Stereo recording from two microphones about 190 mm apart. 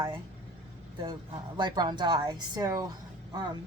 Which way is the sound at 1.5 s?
25° right (ahead or behind).